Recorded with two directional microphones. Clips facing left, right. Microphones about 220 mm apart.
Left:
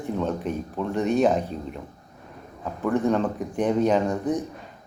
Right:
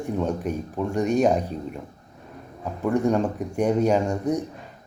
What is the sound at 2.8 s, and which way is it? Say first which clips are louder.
Speech: right 1 dB; 15° right (ahead or behind).